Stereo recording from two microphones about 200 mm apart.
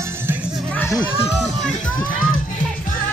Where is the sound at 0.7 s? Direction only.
10° left (ahead or behind).